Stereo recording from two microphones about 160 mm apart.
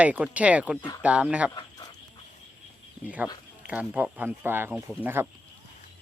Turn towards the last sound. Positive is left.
turn(degrees=-15)  # may be behind; listen again after turning